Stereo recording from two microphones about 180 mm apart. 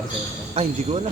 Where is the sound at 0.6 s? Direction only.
35° right (ahead or behind).